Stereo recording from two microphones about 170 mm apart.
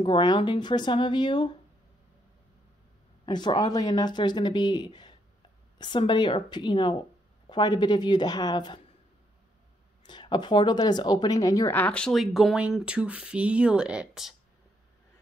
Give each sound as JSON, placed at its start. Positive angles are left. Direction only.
{"t": 0.0, "sound": "speech", "side_deg": 25}
{"t": 3.3, "sound": "speech", "side_deg": 25}
{"t": 10.0, "sound": "a woman's voice", "side_deg": 25}